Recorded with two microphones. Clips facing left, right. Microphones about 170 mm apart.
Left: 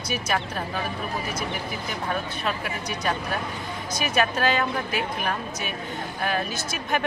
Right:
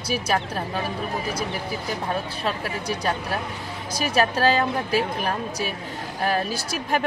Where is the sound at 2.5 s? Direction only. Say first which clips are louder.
Right 4 dB; 30° right (ahead or behind).